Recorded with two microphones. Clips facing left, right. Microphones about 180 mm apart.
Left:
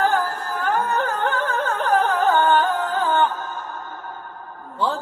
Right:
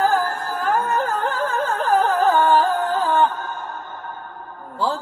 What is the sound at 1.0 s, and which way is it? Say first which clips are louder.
Music: even; 35° right (ahead or behind).